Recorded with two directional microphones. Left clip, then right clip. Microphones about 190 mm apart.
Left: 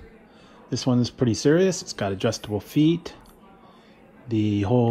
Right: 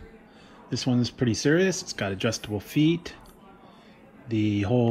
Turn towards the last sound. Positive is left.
turn(degrees=20)  # may be behind; listen again after turning